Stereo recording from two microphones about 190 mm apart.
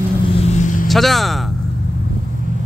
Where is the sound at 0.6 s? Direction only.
45° left (ahead or behind).